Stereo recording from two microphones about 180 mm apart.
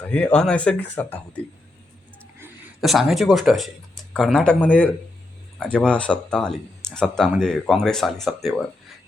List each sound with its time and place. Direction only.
0.0 s speech: 5° left (ahead or behind)
2.4 s speech: 5° right (ahead or behind)